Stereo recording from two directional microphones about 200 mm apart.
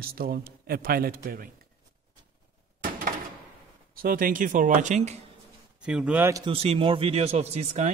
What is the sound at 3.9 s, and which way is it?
Speech, 45° right (ahead or behind).